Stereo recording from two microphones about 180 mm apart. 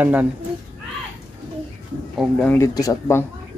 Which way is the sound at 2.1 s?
5° left (ahead or behind).